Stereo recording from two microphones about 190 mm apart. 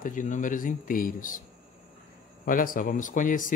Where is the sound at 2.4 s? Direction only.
45° left (ahead or behind).